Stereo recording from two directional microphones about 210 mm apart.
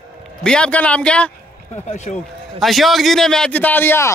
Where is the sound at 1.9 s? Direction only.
35° left (ahead or behind).